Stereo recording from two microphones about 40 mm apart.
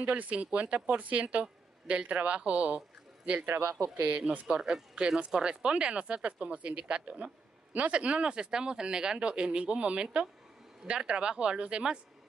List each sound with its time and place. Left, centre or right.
0.1 s a woman's voice: right
3.4 s speech: right
4.5 s speech: right